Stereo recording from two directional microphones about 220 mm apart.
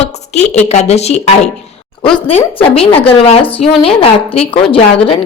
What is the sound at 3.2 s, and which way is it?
Speech, 25° left (ahead or behind).